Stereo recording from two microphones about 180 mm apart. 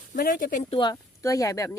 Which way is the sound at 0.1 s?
50° left (ahead or behind).